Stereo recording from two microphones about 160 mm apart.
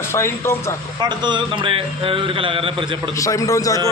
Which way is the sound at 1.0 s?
30° right (ahead or behind).